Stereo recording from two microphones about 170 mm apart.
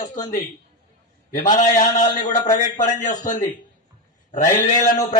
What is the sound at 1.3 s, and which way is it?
A man's voice, 50° left (ahead or behind).